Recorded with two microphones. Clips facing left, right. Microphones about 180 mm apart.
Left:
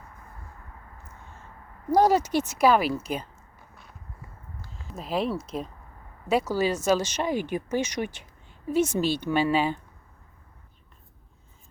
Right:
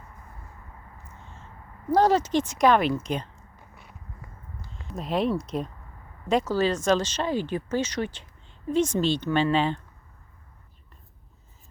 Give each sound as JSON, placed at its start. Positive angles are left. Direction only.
{"t": 1.9, "sound": "speech", "side_deg": 10}
{"t": 4.7, "sound": "speech", "side_deg": 0}